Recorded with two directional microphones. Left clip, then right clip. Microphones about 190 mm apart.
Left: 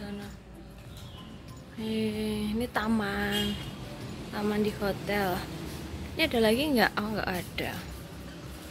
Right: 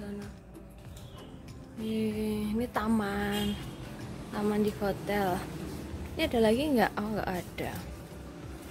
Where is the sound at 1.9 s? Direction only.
10° right (ahead or behind).